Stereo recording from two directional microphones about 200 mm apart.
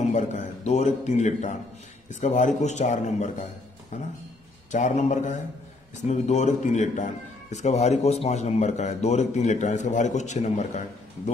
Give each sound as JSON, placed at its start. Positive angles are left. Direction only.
{"t": 0.0, "sound": "a man's voice", "side_deg": 35}